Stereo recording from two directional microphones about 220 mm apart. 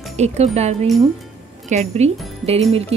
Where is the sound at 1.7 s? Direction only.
30° right (ahead or behind).